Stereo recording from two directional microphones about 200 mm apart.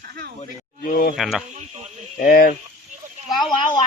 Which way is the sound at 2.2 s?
45° left (ahead or behind).